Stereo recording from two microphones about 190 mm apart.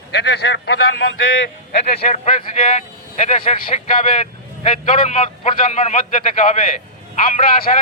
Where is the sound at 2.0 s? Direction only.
35° left (ahead or behind).